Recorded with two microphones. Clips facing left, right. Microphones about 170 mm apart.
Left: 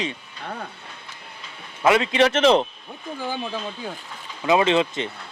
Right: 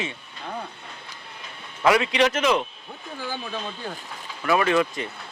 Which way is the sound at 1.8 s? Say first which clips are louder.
Left 2 dB; 25° left (ahead or behind).